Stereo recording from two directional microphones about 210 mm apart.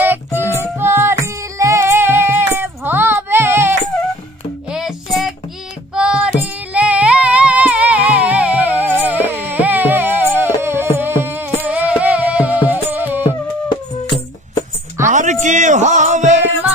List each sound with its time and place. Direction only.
0.0 s child singing: 10° right (ahead or behind)
0.7 s music: 10° right (ahead or behind)
5.9 s female singing: 5° right (ahead or behind)
6.7 s music: 5° right (ahead or behind)
15.0 s music: 35° right (ahead or behind)